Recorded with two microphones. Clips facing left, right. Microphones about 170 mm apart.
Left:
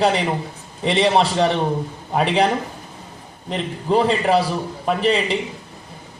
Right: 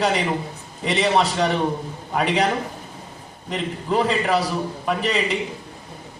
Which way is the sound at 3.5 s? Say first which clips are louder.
Left 4 dB; 30° left (ahead or behind).